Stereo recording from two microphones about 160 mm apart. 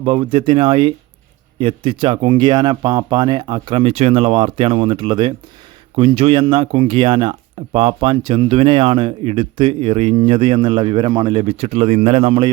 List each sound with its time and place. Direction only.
0.0 s speech: 35° right (ahead or behind)